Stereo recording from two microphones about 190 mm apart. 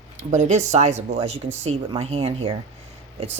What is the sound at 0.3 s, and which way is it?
Speech, 35° right (ahead or behind).